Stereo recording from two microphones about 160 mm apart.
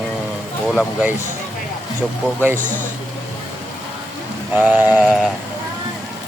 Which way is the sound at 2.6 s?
55° right (ahead or behind).